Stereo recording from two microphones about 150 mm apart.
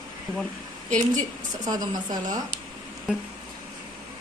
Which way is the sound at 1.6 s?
25° right (ahead or behind).